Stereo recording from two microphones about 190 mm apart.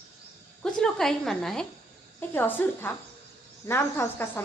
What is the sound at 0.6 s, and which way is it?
A woman's voice, centre (ahead or behind).